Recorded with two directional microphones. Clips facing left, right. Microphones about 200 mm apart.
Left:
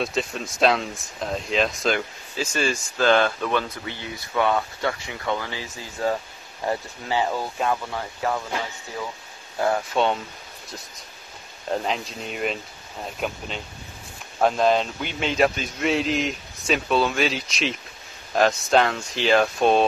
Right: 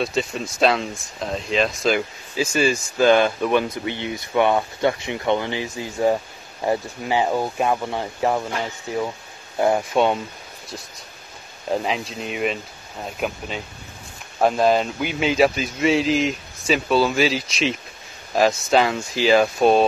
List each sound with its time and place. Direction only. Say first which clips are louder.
0.0 s speech: right 3 dB; centre (ahead or behind); by 8.5 s 25° right (ahead or behind)
9.6 s speech: right 4 dB; 20° right (ahead or behind)
11.7 s a man's voice: right 3 dB; 5° right (ahead or behind)
14.4 s a man's voice: right 2 dB; 5° right (ahead or behind)